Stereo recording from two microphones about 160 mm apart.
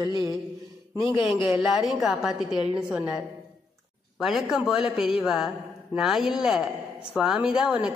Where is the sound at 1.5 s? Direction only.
Centre (ahead or behind).